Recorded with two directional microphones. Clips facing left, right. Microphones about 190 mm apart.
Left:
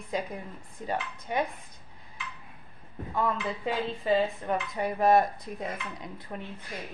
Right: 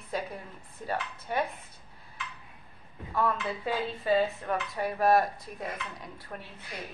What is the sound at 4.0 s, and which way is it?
Speech, 20° left (ahead or behind).